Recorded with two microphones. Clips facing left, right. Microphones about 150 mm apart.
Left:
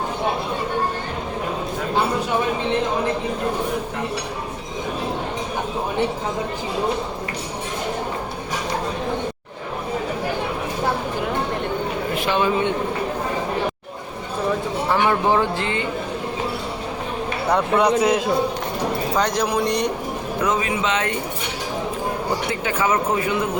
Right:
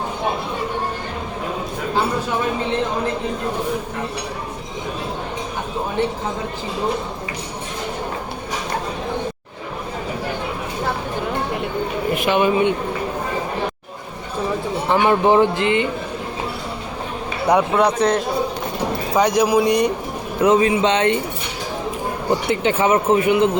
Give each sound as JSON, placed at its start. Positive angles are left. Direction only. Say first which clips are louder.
{"t": 12.1, "sound": "a sound", "louder": "right 3 dB", "side_deg": -15}
{"t": 14.8, "sound": "a man's voice", "louder": "right 4 dB", "side_deg": -20}
{"t": 17.7, "sound": "a man's voice", "louder": "even", "side_deg": 0}
{"t": 19.1, "sound": "speech", "louder": "right 7 dB", "side_deg": -10}
{"t": 20.4, "sound": "speech", "louder": "right 8 dB", "side_deg": -30}
{"t": 22.6, "sound": "a man's voice", "louder": "right 4 dB", "side_deg": -25}